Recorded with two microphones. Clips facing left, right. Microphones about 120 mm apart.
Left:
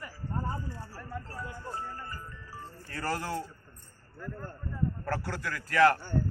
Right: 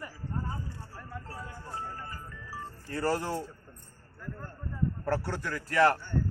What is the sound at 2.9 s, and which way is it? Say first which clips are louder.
Speech: right 3 dB; 20° right (ahead or behind).